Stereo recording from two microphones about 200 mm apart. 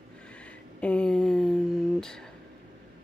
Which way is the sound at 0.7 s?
5° left (ahead or behind).